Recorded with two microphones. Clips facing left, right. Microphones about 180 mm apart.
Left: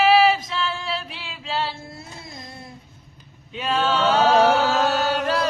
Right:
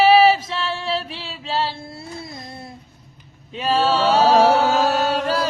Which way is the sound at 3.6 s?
30° right (ahead or behind).